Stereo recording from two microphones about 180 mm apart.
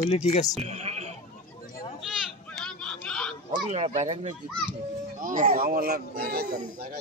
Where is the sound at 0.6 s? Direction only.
35° right (ahead or behind).